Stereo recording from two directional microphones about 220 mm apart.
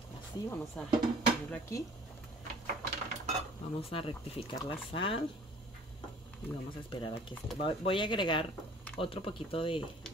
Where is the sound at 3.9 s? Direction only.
25° left (ahead or behind).